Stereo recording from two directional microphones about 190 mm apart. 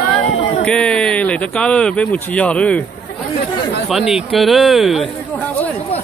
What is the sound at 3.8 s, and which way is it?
Speech, centre (ahead or behind).